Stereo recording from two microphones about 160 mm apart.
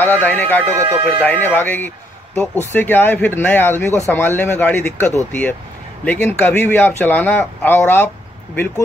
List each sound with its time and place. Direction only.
0.0 s speech: 10° left (ahead or behind)
0.7 s speech: 20° right (ahead or behind)
1.2 s speech: 10° left (ahead or behind)